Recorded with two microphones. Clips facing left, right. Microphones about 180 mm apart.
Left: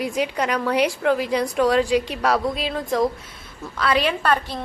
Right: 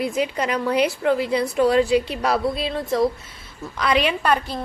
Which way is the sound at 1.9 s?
10° left (ahead or behind).